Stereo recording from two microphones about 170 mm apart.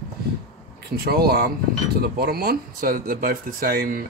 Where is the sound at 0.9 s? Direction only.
65° right (ahead or behind).